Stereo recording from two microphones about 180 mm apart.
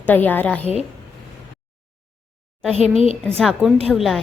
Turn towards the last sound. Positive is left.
turn(degrees=0)  # may be behind; listen again after turning